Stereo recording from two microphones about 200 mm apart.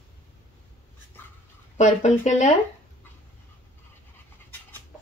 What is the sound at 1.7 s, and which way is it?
Speech, 35° left (ahead or behind).